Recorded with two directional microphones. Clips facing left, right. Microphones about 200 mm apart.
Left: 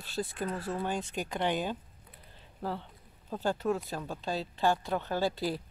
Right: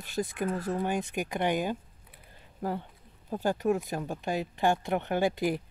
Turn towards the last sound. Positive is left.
turn(degrees=-15)  # may be behind; listen again after turning